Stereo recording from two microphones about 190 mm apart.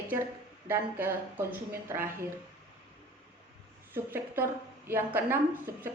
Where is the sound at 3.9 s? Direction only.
10° right (ahead or behind).